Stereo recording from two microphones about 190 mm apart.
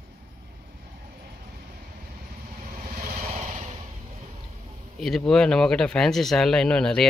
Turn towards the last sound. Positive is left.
turn(degrees=5)  # may be behind; listen again after turning